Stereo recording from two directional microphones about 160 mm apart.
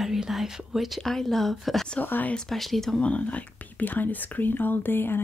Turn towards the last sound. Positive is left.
turn(degrees=15)  # may be behind; listen again after turning